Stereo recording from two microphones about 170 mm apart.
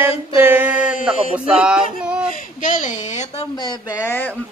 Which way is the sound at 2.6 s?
50° left (ahead or behind).